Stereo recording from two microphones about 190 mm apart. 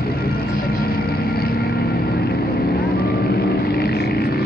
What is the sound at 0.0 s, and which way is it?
Music, 55° left (ahead or behind).